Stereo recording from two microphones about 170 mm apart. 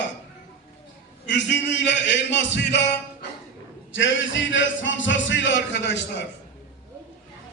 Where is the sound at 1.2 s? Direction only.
90° left.